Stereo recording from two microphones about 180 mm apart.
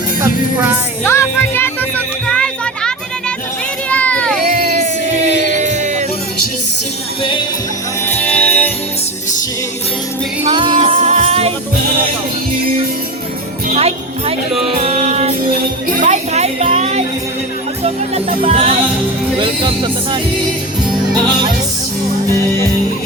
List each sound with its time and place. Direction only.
0.2 s speech: 10° right (ahead or behind)
1.0 s music: 15° left (ahead or behind)
3.8 s a sound: 5° left (ahead or behind)
4.6 s music: 45° right (ahead or behind)
7.2 s music: 25° left (ahead or behind)
8.0 s music: 10° left (ahead or behind)
10.4 s music: 25° right (ahead or behind)
13.7 s music: 35° right (ahead or behind)
16.0 s a sound: 40° right (ahead or behind)
17.8 s music: 35° right (ahead or behind)